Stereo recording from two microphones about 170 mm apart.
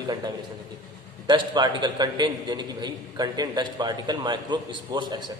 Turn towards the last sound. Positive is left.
turn(degrees=-25)  # may be behind; listen again after turning